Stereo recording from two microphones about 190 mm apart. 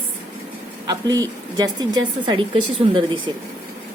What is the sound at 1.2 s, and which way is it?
Speech, 20° right (ahead or behind).